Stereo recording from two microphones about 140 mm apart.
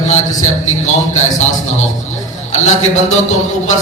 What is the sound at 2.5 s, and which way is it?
Speech, 55° left (ahead or behind).